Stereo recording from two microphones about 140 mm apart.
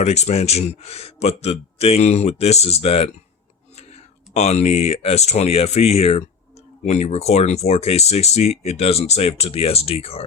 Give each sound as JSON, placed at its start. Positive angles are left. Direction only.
{"t": 0.0, "sound": "speech", "side_deg": 50}